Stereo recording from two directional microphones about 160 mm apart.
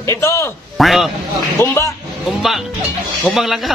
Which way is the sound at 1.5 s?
20° left (ahead or behind).